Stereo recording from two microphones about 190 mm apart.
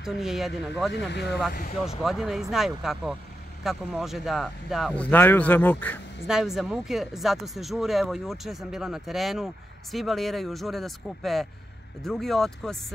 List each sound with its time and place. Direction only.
0.0 s speech: centre (ahead or behind)
0.9 s speech: 65° left (ahead or behind)
2.0 s speech: centre (ahead or behind)
6.2 s speech: 5° right (ahead or behind)